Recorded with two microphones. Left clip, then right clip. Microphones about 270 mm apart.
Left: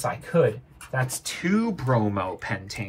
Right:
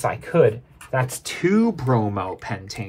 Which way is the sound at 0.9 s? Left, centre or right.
Right.